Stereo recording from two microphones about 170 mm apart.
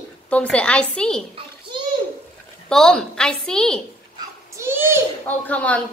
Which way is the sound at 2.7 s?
5° left (ahead or behind).